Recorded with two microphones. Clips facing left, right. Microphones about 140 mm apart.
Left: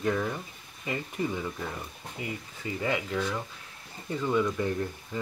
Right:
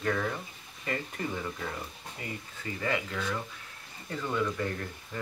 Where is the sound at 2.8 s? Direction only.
15° left (ahead or behind).